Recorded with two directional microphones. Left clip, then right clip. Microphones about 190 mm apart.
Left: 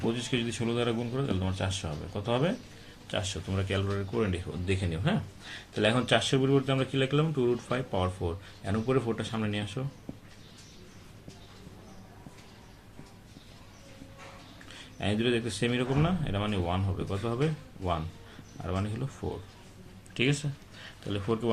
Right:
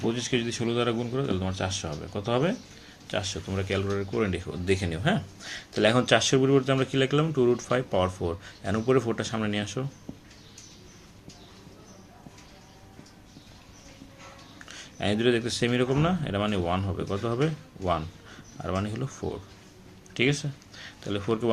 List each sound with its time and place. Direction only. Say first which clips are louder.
0.1 s speech: right 3 dB; 20° right (ahead or behind)
4.6 s speech: right 6 dB; 40° right (ahead or behind)
14.7 s speech: right 4 dB; 35° right (ahead or behind)
20.1 s speech: right 3 dB; 15° right (ahead or behind)